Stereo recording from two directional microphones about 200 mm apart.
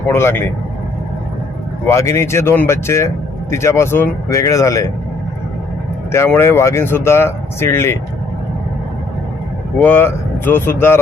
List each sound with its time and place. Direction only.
0.1 s speech: 10° left (ahead or behind)
1.9 s speech: 15° left (ahead or behind)
6.1 s speech: 10° left (ahead or behind)
9.7 s speech: 10° left (ahead or behind)